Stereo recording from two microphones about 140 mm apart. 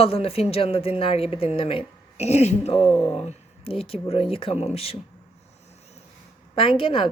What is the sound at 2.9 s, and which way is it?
Speech, 15° left (ahead or behind).